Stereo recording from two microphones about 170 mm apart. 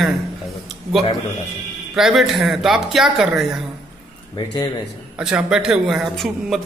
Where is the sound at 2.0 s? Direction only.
Centre (ahead or behind).